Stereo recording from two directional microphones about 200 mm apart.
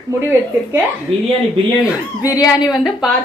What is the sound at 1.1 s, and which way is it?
Speech, 30° right (ahead or behind).